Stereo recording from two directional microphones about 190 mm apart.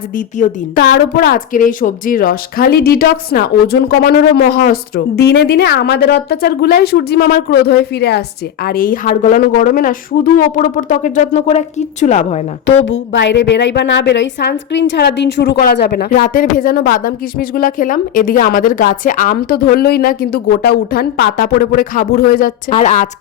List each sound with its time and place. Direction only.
0.8 s a woman's voice: 55° left (ahead or behind); by 12.4 s 35° left (ahead or behind)
12.7 s speech: 85° left
13.2 s a woman's voice: 70° left (ahead or behind); by 22.5 s 50° left (ahead or behind)
22.7 s a woman's voice: 40° left (ahead or behind)